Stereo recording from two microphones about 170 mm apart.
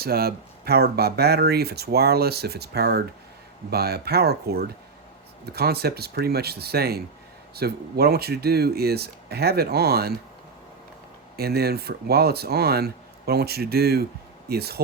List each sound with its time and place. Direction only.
0.0 s speech: 65° right (ahead or behind)
11.3 s speech: 65° right (ahead or behind)